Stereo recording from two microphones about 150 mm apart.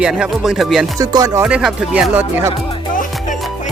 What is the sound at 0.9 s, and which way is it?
Music, 25° right (ahead or behind).